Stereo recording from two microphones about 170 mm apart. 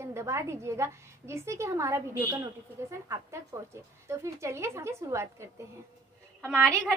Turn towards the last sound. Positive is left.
turn(degrees=5)  # may be behind; listen again after turning